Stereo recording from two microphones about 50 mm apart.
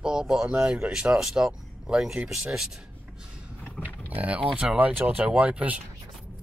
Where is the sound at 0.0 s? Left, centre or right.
Centre.